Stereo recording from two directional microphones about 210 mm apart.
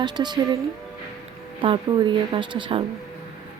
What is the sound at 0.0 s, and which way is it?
Speech, 20° right (ahead or behind).